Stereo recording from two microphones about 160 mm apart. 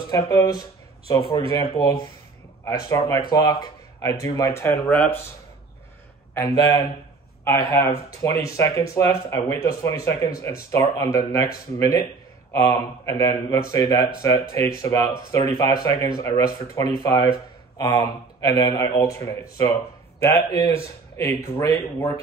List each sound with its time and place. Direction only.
0.1 s speech: 25° left (ahead or behind); by 5.1 s 5° left (ahead or behind)
6.3 s a man's voice: 20° left (ahead or behind)